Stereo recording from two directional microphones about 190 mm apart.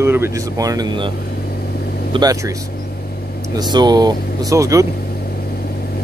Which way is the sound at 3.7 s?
20° right (ahead or behind).